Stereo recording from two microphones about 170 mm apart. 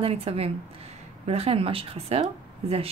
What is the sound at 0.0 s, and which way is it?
Speech, 35° right (ahead or behind).